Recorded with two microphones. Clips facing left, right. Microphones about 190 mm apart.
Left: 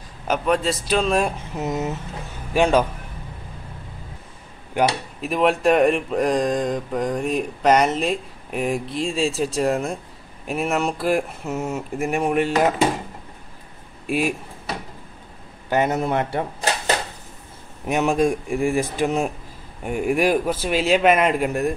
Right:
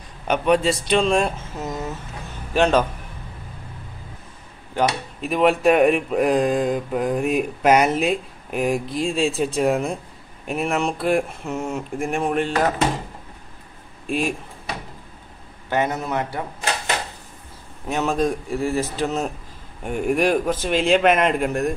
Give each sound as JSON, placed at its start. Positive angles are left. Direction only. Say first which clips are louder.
{"t": 0.3, "sound": "speech", "louder": "right 2 dB", "side_deg": 0}
{"t": 1.5, "sound": "a man's voice", "louder": "left 4 dB", "side_deg": 20}
{"t": 5.2, "sound": "speech", "louder": "right 1 dB", "side_deg": 0}
{"t": 14.0, "sound": "speech", "louder": "left 1 dB", "side_deg": 5}
{"t": 15.7, "sound": "speech", "louder": "left 2 dB", "side_deg": 20}
{"t": 17.8, "sound": "a man's voice", "louder": "left 2 dB", "side_deg": 15}